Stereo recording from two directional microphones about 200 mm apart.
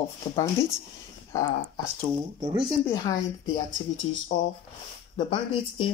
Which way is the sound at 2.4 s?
15° right (ahead or behind).